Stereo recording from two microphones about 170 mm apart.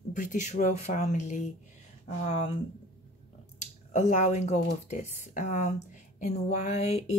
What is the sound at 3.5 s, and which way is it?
Speech, 45° left (ahead or behind).